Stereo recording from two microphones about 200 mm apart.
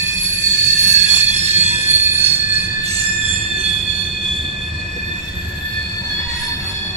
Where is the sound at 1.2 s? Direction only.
35° right (ahead or behind).